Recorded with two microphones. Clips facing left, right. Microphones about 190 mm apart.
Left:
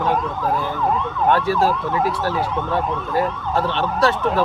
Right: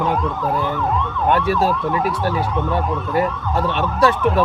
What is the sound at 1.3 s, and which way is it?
Speech, 20° right (ahead or behind).